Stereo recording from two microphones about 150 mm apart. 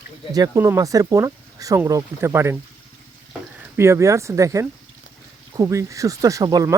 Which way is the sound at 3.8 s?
20° right (ahead or behind).